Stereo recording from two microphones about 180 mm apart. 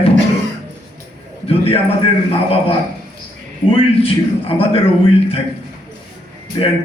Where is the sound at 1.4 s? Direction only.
30° left (ahead or behind).